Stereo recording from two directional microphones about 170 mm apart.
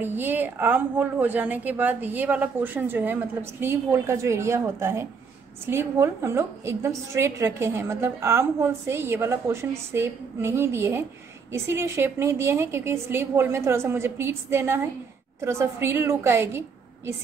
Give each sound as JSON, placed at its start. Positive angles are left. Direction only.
{"t": 0.0, "sound": "a woman's voice", "side_deg": -10}